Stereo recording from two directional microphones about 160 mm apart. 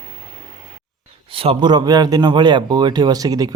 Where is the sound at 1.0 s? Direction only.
35° right (ahead or behind).